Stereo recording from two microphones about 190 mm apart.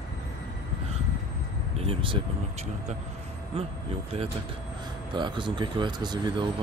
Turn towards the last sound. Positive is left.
turn(degrees=-20)  # may be behind; listen again after turning